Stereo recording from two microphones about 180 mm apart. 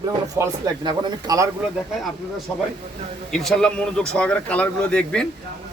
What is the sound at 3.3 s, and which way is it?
Speech, 5° left (ahead or behind).